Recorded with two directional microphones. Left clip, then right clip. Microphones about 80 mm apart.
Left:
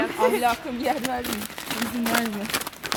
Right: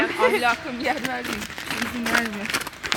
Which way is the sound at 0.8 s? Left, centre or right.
Left.